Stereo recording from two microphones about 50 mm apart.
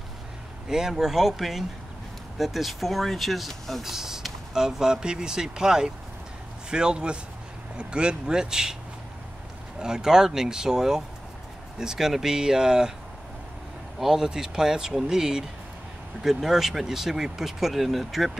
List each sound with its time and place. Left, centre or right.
0.7 s speech: centre
3.9 s speech: centre
9.8 s speech: centre
13.9 s speech: centre